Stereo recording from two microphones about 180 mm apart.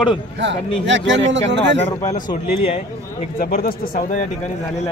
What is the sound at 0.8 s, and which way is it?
Speech, 90° right.